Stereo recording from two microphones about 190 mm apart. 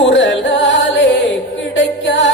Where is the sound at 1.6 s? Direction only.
75° left (ahead or behind).